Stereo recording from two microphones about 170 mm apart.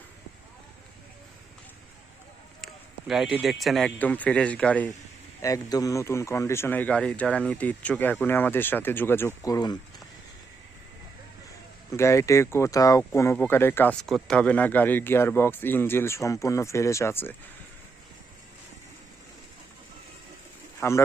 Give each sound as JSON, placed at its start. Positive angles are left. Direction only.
{"t": 3.1, "sound": "a man's voice", "side_deg": 0}
{"t": 5.4, "sound": "speech", "side_deg": 20}
{"t": 11.9, "sound": "speech", "side_deg": 15}
{"t": 20.8, "sound": "speech", "side_deg": 15}